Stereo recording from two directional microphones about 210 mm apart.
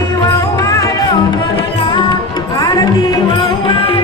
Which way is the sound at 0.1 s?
15° left (ahead or behind).